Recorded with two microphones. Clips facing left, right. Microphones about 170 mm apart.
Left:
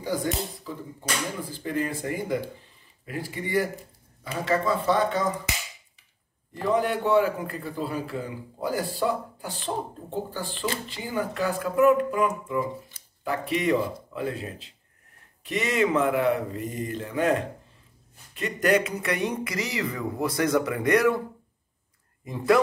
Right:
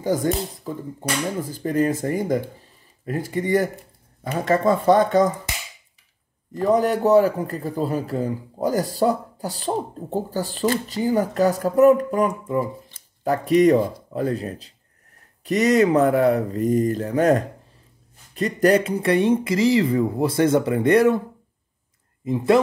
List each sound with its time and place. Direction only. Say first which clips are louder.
0.0 s speech: right 6 dB; 45° right (ahead or behind)
6.5 s a man's voice: right 6 dB; 40° right (ahead or behind)
22.2 s speech: right 4 dB; 25° right (ahead or behind)